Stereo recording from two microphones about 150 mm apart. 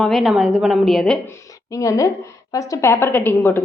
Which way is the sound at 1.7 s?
20° left (ahead or behind).